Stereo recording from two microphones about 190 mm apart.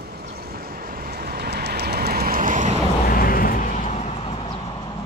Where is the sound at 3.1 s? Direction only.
50° left (ahead or behind); by 4.6 s 30° left (ahead or behind).